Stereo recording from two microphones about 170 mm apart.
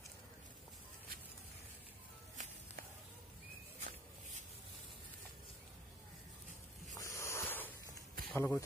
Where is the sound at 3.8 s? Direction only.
45° right (ahead or behind).